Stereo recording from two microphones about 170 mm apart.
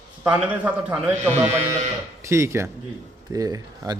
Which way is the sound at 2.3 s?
15° right (ahead or behind).